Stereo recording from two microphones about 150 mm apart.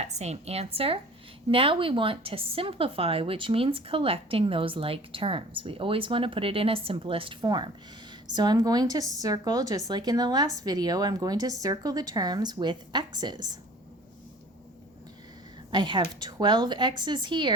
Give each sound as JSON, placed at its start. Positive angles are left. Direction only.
{"t": 0.0, "sound": "a woman's voice", "side_deg": -45}
{"t": 15.7, "sound": "speech", "side_deg": -30}